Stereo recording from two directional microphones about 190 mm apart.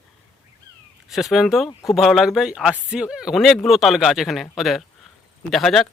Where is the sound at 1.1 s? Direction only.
Centre (ahead or behind).